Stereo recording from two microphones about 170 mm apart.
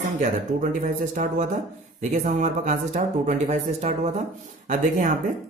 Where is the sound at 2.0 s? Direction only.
45° right (ahead or behind).